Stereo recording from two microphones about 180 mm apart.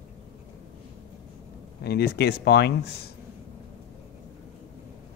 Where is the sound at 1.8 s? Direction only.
60° left (ahead or behind).